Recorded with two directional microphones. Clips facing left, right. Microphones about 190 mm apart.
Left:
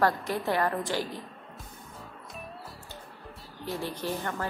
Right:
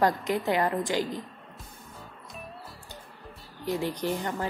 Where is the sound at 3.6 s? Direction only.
15° right (ahead or behind).